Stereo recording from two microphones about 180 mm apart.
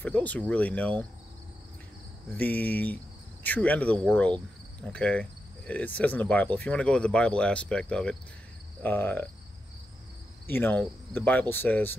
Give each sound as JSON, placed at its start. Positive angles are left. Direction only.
{"t": 0.0, "sound": "speech", "side_deg": 10}
{"t": 2.3, "sound": "speech", "side_deg": 10}
{"t": 10.4, "sound": "speech", "side_deg": 10}